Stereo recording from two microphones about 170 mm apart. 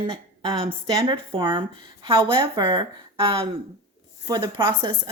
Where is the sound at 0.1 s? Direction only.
35° right (ahead or behind).